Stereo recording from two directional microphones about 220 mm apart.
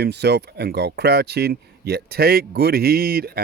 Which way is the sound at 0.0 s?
50° right (ahead or behind).